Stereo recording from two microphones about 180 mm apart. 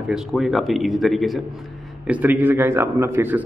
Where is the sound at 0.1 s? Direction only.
Centre (ahead or behind).